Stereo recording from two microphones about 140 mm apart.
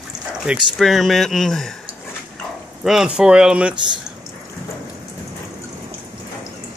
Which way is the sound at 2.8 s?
5° right (ahead or behind).